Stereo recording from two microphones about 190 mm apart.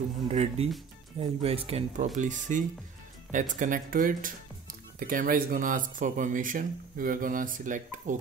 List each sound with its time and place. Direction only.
0.3 s speech: 35° right (ahead or behind)